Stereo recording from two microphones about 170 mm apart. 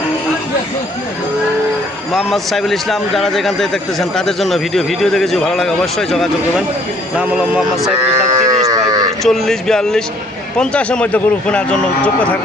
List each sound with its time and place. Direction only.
2.1 s a man's voice: centre (ahead or behind)
8.0 s livestock: 15° right (ahead or behind)
9.2 s a man's voice: centre (ahead or behind)